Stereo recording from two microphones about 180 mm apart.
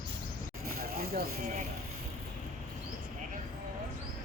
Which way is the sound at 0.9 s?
55° right (ahead or behind).